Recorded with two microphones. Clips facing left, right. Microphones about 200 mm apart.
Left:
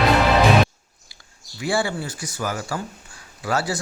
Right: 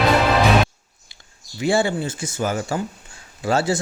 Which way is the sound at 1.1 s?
25° right (ahead or behind).